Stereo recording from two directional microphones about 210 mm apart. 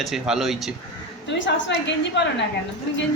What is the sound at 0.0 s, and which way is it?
Speech, centre (ahead or behind).